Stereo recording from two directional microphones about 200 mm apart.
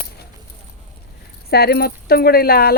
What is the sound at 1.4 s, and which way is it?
Speech, 50° left (ahead or behind).